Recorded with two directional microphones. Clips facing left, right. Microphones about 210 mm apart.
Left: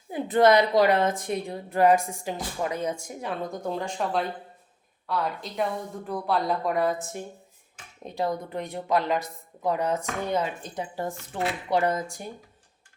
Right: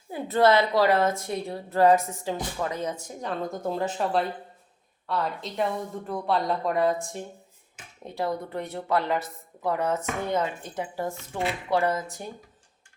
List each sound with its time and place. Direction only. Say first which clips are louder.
0.1 s a woman's voice: left 1 dB; 15° left (ahead or behind)
3.6 s speech: right 4 dB; 5° right (ahead or behind)
8.0 s a woman's voice: left 1 dB; 15° left (ahead or behind)